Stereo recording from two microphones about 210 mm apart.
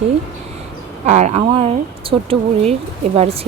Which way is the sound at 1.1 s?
30° right (ahead or behind).